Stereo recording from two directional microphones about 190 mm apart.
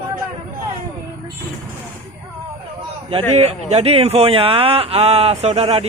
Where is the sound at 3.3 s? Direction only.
35° right (ahead or behind).